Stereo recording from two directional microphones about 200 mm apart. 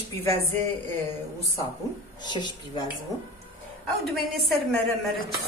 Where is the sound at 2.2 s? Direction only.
20° left (ahead or behind).